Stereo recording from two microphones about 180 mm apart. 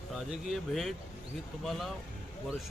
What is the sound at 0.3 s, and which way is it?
Speech, centre (ahead or behind).